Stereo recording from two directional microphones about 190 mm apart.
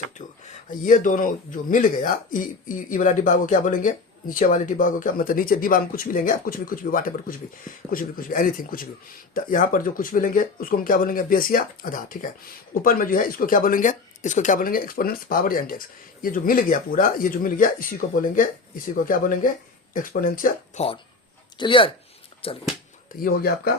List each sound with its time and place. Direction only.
0.7 s speech: 40° left (ahead or behind)
19.9 s speech: 45° left (ahead or behind)
21.6 s speech: 25° left (ahead or behind)
23.1 s speech: 45° left (ahead or behind)